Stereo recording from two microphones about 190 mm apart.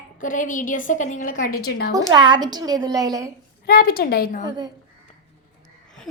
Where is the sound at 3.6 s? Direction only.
50° left (ahead or behind).